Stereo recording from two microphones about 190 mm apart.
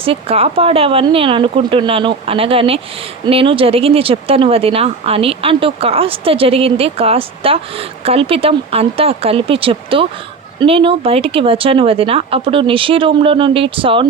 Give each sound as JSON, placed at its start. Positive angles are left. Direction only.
{"t": 0.0, "sound": "speech", "side_deg": -30}